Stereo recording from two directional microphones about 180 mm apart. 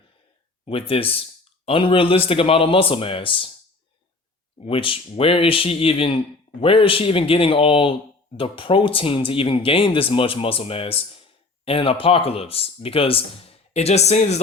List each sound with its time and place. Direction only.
0.6 s speech: 30° left (ahead or behind)
4.6 s speech: 30° left (ahead or behind)